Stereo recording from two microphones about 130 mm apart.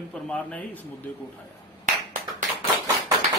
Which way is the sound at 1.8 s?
80° right.